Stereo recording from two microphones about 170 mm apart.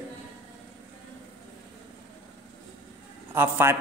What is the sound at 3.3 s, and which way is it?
Speech, 10° right (ahead or behind).